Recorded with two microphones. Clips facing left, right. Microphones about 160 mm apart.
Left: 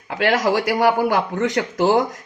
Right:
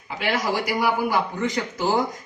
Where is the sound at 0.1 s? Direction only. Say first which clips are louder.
Left 6 dB; 75° left (ahead or behind).